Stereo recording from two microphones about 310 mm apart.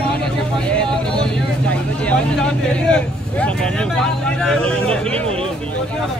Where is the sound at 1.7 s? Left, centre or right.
Centre.